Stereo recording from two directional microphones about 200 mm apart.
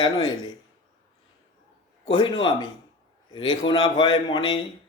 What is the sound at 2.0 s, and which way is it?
A man's voice, 25° left (ahead or behind).